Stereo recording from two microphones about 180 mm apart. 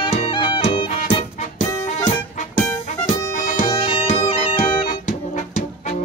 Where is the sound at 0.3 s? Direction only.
25° left (ahead or behind).